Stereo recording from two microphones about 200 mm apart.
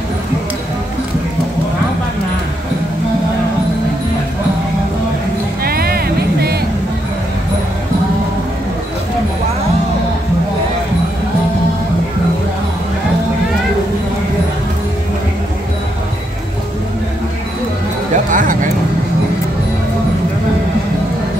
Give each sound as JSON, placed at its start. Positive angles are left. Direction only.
{"t": 5.6, "sound": "music", "side_deg": -50}
{"t": 18.1, "sound": "music", "side_deg": -40}